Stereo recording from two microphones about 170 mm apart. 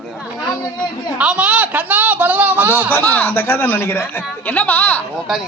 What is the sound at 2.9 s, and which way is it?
Speech, 10° left (ahead or behind).